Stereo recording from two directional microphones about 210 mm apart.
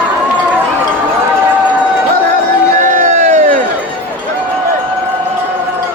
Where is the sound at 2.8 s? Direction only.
35° right (ahead or behind).